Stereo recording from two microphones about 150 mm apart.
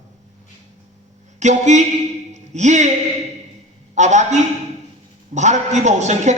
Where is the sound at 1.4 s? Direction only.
50° right (ahead or behind).